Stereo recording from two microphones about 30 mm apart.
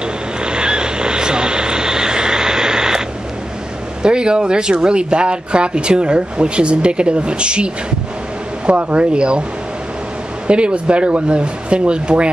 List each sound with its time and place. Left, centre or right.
0.4 s vehicle: right
4.0 s speech: right
10.4 s speech: right